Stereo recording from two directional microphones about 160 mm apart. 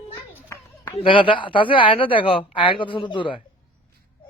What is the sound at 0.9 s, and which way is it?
A woman's voice, 30° left (ahead or behind).